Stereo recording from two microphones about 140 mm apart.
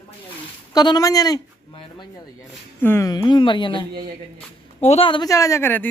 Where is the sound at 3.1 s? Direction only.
30° left (ahead or behind).